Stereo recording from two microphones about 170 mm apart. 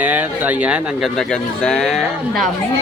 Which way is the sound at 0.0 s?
10° right (ahead or behind).